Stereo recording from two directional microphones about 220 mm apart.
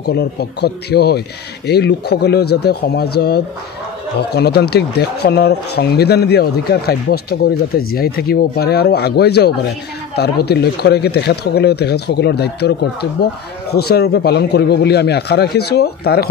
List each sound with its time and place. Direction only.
0.0 s speech: 45° left (ahead or behind)